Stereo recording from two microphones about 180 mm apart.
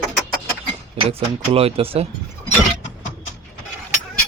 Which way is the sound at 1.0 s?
35° right (ahead or behind).